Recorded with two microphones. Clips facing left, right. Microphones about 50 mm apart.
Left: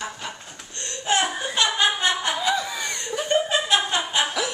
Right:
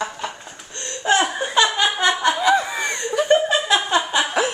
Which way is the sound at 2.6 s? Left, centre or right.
Right.